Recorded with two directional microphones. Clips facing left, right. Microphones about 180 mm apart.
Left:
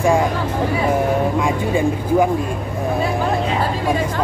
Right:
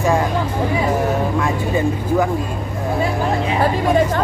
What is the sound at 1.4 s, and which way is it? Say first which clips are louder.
Speech: left 1 dB; 10° left (ahead or behind).